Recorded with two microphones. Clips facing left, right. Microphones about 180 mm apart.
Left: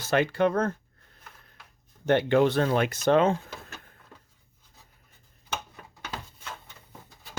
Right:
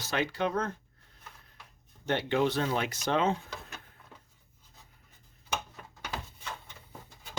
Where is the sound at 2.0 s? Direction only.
55° left (ahead or behind).